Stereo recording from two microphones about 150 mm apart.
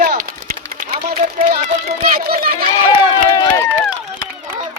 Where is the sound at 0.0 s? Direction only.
75° right (ahead or behind).